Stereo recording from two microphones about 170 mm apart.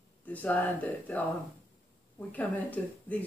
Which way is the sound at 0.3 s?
10° left (ahead or behind).